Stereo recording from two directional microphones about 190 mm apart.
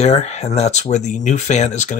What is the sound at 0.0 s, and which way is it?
Speech, 35° left (ahead or behind).